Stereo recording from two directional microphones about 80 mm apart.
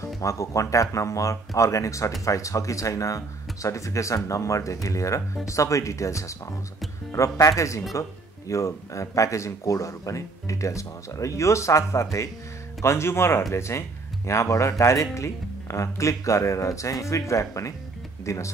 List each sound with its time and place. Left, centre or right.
0.0 s speech: left